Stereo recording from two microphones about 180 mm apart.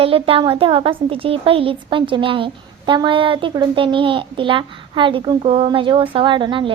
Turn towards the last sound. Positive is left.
turn(degrees=-30)  # may be behind; listen again after turning